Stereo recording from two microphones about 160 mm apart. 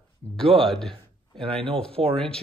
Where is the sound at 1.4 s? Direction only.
35° right (ahead or behind).